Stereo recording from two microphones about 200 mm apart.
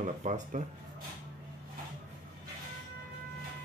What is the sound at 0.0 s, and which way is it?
Speech, 35° right (ahead or behind).